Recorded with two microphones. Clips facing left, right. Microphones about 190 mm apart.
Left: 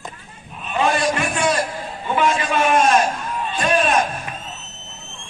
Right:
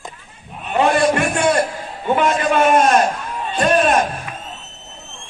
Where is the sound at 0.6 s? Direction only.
60° right (ahead or behind).